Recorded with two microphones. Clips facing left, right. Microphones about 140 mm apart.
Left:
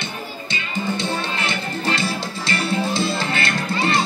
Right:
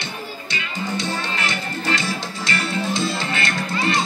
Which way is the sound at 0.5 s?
25° left (ahead or behind).